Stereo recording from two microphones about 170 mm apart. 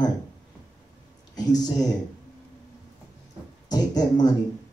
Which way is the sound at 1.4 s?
25° left (ahead or behind).